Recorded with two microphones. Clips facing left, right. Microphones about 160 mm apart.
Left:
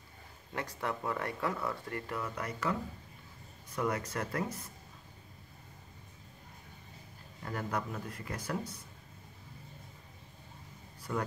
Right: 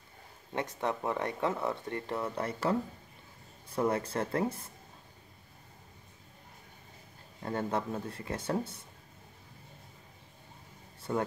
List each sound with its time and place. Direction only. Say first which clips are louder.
0.5 s speech: right 4 dB; 25° right (ahead or behind)
7.4 s speech: right 4 dB; 25° right (ahead or behind)
11.0 s a sound: right 4 dB; 25° right (ahead or behind)